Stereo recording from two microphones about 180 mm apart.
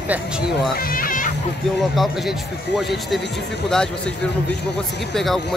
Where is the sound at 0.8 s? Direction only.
50° left (ahead or behind).